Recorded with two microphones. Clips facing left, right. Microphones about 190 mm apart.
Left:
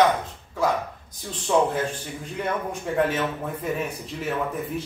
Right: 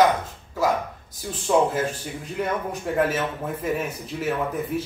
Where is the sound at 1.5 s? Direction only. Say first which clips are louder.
Right 1 dB; 5° right (ahead or behind).